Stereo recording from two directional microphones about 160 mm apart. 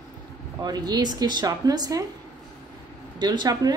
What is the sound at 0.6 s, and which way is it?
A woman's voice, 25° right (ahead or behind).